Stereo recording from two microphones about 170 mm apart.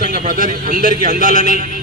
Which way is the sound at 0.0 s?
50° right (ahead or behind).